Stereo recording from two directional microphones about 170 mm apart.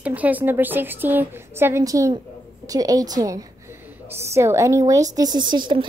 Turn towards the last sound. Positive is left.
turn(degrees=-25)  # may be behind; listen again after turning